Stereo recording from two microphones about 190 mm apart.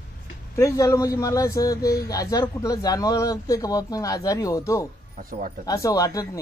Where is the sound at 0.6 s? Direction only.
15° left (ahead or behind).